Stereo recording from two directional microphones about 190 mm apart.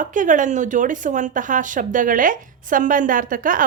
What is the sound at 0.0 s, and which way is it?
Speech, 45° right (ahead or behind).